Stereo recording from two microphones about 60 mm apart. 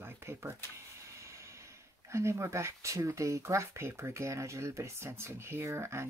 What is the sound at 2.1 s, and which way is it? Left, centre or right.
Speech, right.